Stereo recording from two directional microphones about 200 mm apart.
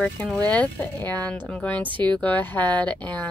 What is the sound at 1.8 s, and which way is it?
Speech, 25° right (ahead or behind).